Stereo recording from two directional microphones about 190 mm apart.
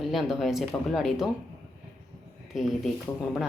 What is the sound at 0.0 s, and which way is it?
Speech, centre (ahead or behind).